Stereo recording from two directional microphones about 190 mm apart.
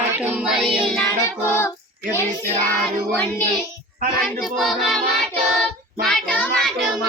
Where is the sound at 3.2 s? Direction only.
10° left (ahead or behind).